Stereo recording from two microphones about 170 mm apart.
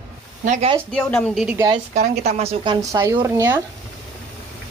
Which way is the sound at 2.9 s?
15° right (ahead or behind).